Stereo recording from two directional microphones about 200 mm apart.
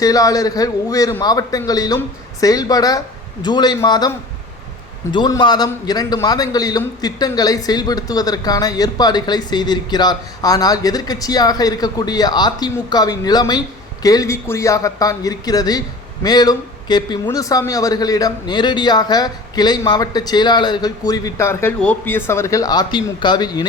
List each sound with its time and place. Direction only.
0.0 s a man's voice: 20° left (ahead or behind)
5.1 s a man's voice: 20° left (ahead or behind)